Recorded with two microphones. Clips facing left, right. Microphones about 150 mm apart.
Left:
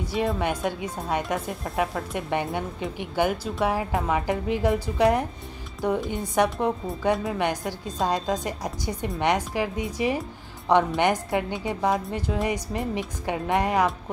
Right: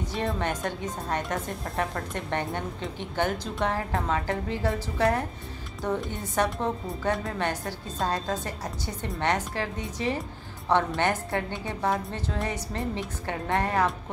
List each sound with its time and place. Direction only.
0.0 s speech: 10° left (ahead or behind)